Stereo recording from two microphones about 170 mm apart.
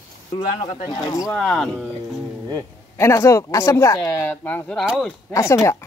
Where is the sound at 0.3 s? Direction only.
20° left (ahead or behind).